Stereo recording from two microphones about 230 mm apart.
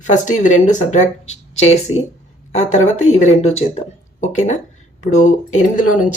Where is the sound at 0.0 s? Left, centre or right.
Left.